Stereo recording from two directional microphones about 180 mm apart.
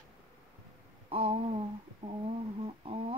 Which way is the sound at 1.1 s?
35° right (ahead or behind).